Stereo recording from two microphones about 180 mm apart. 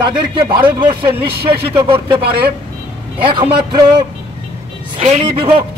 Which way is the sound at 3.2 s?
30° right (ahead or behind).